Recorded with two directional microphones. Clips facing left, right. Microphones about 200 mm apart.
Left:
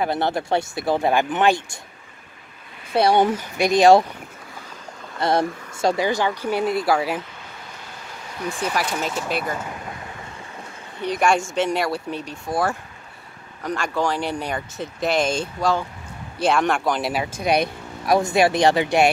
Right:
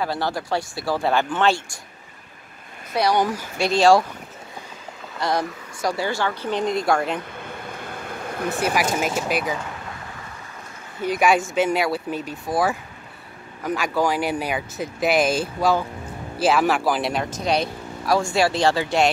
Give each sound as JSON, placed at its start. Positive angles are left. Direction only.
{"t": 0.0, "sound": "speech", "side_deg": 20}
{"t": 2.9, "sound": "speech", "side_deg": 25}
{"t": 5.2, "sound": "speech", "side_deg": 25}
{"t": 7.3, "sound": "a sound", "side_deg": -55}
{"t": 8.9, "sound": "speech", "side_deg": -10}
{"t": 11.1, "sound": "speech", "side_deg": -5}